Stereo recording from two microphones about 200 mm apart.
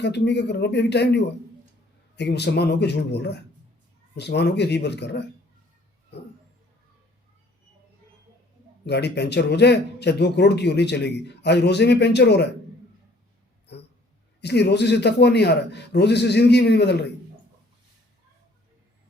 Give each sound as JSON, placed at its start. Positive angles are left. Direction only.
{"t": 0.0, "sound": "a man's voice", "side_deg": 55}
{"t": 8.9, "sound": "a man's voice", "side_deg": 55}
{"t": 13.7, "sound": "a sound", "side_deg": 60}
{"t": 14.4, "sound": "a man's voice", "side_deg": 55}